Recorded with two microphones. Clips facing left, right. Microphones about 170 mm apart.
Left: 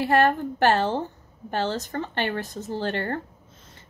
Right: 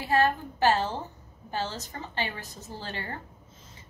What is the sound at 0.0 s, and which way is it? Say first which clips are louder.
A woman's voice: left 5 dB; 65° left (ahead or behind).